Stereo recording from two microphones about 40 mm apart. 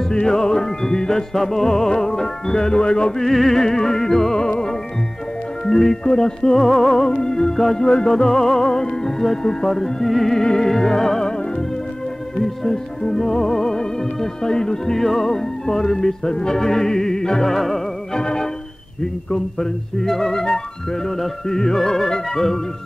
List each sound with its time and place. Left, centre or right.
0.1 s music: centre
3.3 s music: centre
5.7 s music: centre
6.5 s music: centre
7.1 s music: centre
7.8 s music: left
8.1 s music: centre
18.1 s music: centre
21.5 s music: centre